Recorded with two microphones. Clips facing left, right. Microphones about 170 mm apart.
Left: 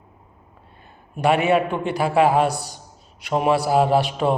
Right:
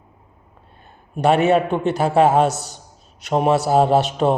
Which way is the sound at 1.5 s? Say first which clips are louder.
Right 3 dB; 25° right (ahead or behind).